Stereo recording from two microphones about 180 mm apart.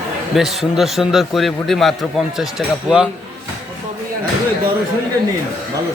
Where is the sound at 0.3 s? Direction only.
Centre (ahead or behind).